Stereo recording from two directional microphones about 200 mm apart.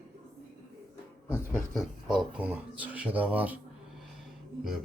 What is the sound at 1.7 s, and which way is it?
Speech, centre (ahead or behind).